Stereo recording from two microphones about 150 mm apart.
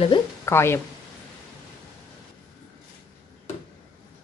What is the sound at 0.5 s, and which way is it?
Speech, 15° left (ahead or behind).